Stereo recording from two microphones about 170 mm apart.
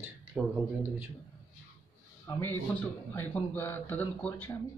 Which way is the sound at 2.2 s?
15° left (ahead or behind).